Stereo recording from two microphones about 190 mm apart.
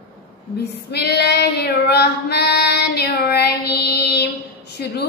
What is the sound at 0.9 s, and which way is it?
Child singing, 60° left (ahead or behind).